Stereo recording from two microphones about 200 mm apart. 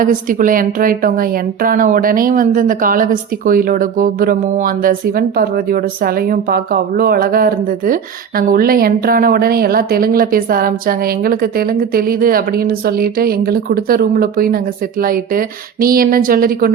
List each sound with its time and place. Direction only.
0.0 s speech: 40° right (ahead or behind)